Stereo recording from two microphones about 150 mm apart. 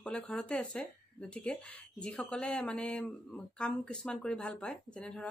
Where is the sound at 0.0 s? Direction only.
5° left (ahead or behind).